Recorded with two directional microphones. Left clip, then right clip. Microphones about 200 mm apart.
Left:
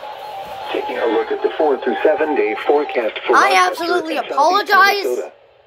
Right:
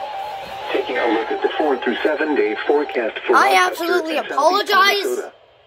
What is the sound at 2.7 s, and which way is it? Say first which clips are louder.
Speech: left 2 dB; 25° right (ahead or behind).